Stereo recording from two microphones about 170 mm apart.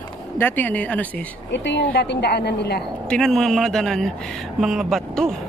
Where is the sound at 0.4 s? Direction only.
10° left (ahead or behind).